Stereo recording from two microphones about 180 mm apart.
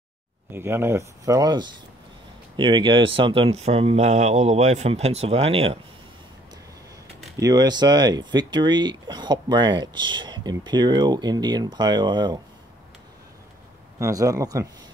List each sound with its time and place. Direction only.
0.5 s speech: 15° right (ahead or behind); by 5.8 s 35° right (ahead or behind)
7.3 s speech: 20° right (ahead or behind)
13.9 s speech: 15° right (ahead or behind)